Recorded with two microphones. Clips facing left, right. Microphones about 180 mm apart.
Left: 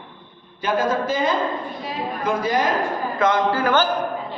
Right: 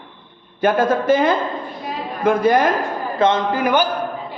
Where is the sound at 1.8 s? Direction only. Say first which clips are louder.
Right 7 dB; 55° right (ahead or behind).